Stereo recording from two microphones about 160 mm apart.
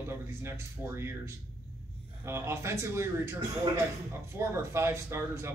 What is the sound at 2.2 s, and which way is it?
A man's voice, 15° right (ahead or behind).